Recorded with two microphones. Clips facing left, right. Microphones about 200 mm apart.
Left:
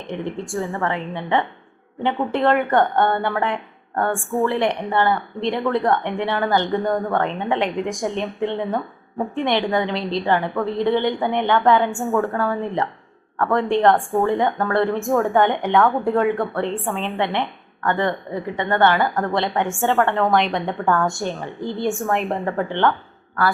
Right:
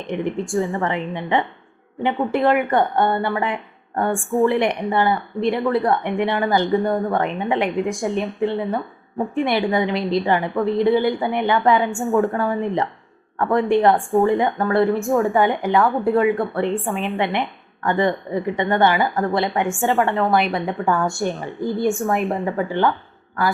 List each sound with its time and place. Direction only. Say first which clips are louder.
0.1 s a woman's voice: right 4 dB; 15° right (ahead or behind)
4.2 s a woman's voice: right 3 dB; centre (ahead or behind)
4.4 s a woman's voice: right 2 dB; 15° right (ahead or behind)
6.1 s a woman's voice: right 1 dB; 15° right (ahead or behind)
12.1 s a woman's voice: right 4 dB; 15° right (ahead or behind)
20.1 s a woman's voice: even; 5° right (ahead or behind)